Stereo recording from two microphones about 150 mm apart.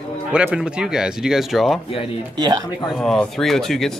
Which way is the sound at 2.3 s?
30° right (ahead or behind).